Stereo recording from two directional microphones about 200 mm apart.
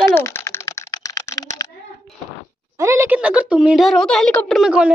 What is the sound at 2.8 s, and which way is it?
A woman's voice, 15° right (ahead or behind).